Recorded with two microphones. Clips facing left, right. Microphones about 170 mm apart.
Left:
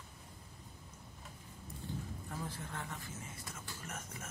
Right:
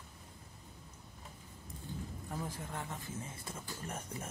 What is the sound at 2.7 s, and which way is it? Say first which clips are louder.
Speech: right 2 dB; 20° right (ahead or behind).